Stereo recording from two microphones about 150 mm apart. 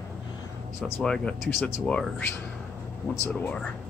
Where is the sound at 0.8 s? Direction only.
5° left (ahead or behind).